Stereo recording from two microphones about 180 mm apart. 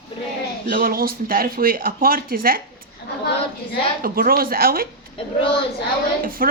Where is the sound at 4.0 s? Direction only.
55° right (ahead or behind).